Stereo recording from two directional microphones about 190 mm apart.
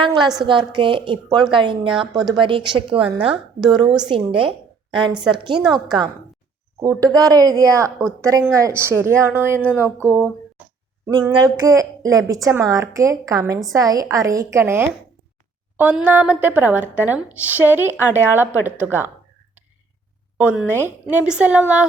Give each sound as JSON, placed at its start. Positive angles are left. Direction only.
{"t": 0.0, "sound": "a woman's voice", "side_deg": -25}
{"t": 3.0, "sound": "speech", "side_deg": -5}
{"t": 3.6, "sound": "a woman's voice", "side_deg": -25}
{"t": 7.0, "sound": "a woman's voice", "side_deg": -20}
{"t": 9.6, "sound": "a sound", "side_deg": 10}
{"t": 9.8, "sound": "speech", "side_deg": -10}
{"t": 11.0, "sound": "a sound", "side_deg": -20}
{"t": 11.3, "sound": "a woman's voice", "side_deg": -20}
{"t": 20.4, "sound": "a woman's voice", "side_deg": -10}